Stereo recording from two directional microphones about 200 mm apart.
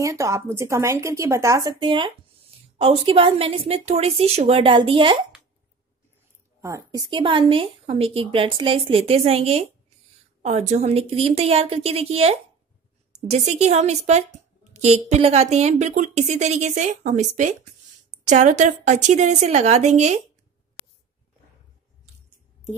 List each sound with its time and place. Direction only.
0.0 s a woman's voice: 15° right (ahead or behind)
6.6 s a woman's voice: 15° right (ahead or behind); by 20.2 s 35° right (ahead or behind)